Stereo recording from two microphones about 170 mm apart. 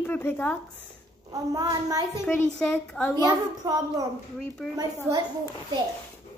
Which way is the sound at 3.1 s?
20° right (ahead or behind).